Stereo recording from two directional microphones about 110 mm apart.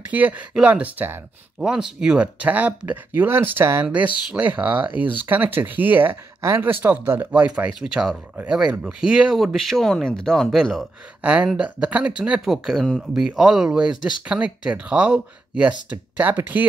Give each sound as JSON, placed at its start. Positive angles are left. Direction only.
{"t": 0.1, "sound": "speech", "side_deg": -15}
{"t": 1.7, "sound": "speech", "side_deg": -5}
{"t": 12.4, "sound": "speech", "side_deg": 0}